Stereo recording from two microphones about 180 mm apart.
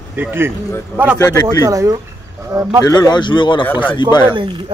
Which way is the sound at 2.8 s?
20° left (ahead or behind).